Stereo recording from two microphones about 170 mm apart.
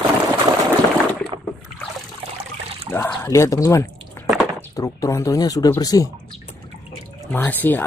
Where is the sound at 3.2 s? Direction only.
15° left (ahead or behind).